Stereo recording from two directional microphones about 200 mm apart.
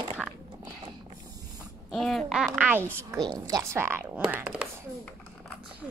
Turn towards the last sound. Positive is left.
turn(degrees=-5)  # may be behind; listen again after turning